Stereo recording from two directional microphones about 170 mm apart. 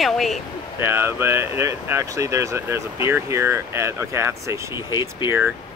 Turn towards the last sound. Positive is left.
turn(degrees=25)  # may be behind; listen again after turning